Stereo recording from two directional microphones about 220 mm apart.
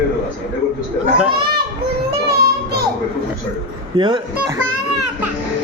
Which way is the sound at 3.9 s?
20° right (ahead or behind).